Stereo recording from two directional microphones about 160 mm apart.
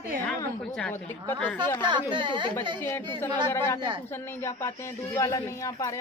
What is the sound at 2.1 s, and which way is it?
Speech, 30° right (ahead or behind).